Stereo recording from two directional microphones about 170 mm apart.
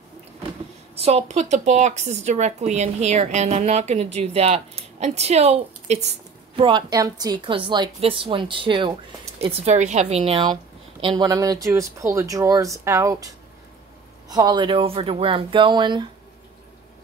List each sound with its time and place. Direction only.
0.9 s a woman's voice: 40° right (ahead or behind); by 13.3 s 20° right (ahead or behind)
14.3 s a woman's voice: 25° right (ahead or behind)